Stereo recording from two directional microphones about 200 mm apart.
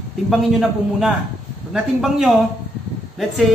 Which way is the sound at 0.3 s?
Centre (ahead or behind).